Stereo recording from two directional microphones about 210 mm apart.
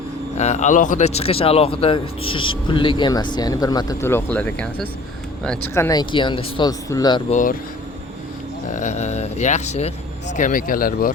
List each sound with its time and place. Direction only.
0.3 s a man's voice: 35° left (ahead or behind); by 5.7 s 5° left (ahead or behind)
5.7 s a man's voice: 15° left (ahead or behind)
7.3 s speech: 35° left (ahead or behind)
8.7 s speech: 35° left (ahead or behind)